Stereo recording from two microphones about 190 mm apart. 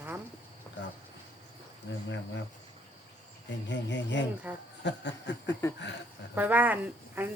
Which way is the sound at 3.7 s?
70° left (ahead or behind).